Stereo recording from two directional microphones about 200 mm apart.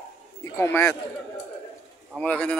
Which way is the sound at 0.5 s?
10° left (ahead or behind).